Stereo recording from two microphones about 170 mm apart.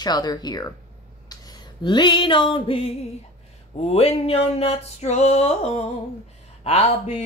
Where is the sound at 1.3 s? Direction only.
25° left (ahead or behind).